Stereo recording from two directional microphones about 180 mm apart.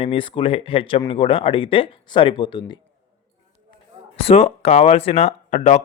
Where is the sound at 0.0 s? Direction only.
30° left (ahead or behind).